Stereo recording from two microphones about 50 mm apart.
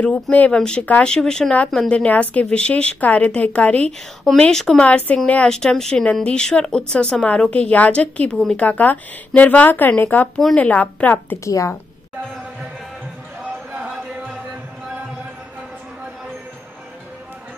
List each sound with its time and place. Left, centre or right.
0.0 s speech: left
4.4 s speech: centre
4.8 s speech: left
5.5 s speech: centre
7.2 s speech: left
8.5 s speech: left
11.4 s speech: left